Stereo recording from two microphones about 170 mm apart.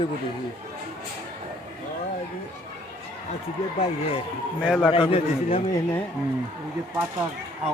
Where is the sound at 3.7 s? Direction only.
35° left (ahead or behind).